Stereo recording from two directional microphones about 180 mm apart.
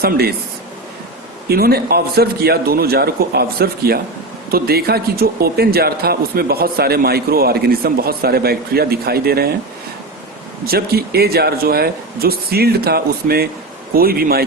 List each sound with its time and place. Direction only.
0.0 s speech: 60° right (ahead or behind)
1.5 s speech: 60° right (ahead or behind)
10.7 s speech: 60° right (ahead or behind)